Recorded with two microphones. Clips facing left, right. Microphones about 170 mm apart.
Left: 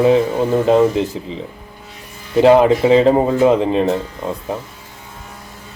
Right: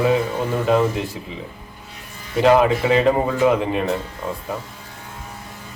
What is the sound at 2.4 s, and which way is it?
A man's voice, 30° left (ahead or behind).